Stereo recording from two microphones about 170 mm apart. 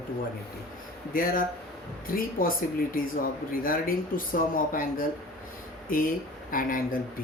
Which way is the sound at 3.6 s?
55° left (ahead or behind).